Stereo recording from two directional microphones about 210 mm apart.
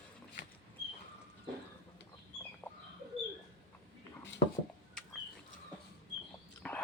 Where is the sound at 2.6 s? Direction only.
10° left (ahead or behind).